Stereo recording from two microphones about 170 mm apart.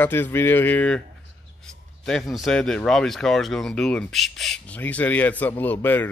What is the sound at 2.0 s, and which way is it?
Speech, centre (ahead or behind).